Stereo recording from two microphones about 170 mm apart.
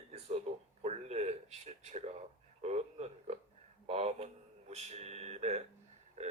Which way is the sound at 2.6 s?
40° right (ahead or behind).